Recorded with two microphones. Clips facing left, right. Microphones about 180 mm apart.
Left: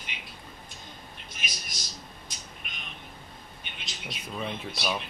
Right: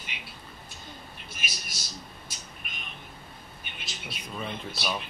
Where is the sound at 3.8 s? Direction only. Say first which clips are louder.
Left 1 dB; centre (ahead or behind).